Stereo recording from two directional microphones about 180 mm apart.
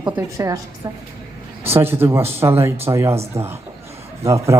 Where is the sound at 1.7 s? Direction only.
10° right (ahead or behind).